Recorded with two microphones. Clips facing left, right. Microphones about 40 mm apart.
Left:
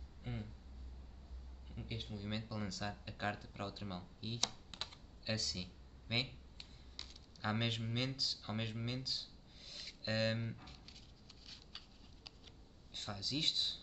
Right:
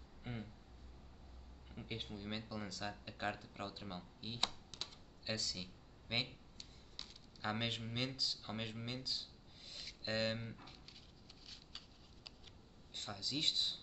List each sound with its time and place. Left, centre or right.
0.2 s a sound: centre
1.7 s a sound: right
2.0 s speech: centre
4.7 s computer keyboard: left
5.2 s speech: centre
10.6 s squish: centre
12.9 s speech: centre